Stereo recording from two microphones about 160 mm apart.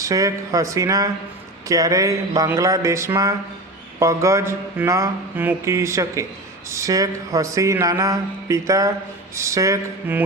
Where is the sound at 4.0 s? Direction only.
20° right (ahead or behind).